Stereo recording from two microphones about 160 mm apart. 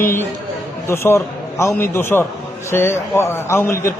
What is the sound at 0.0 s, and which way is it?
A man's voice, 15° left (ahead or behind).